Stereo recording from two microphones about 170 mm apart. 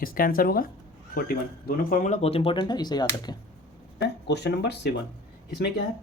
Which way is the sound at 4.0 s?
85° left.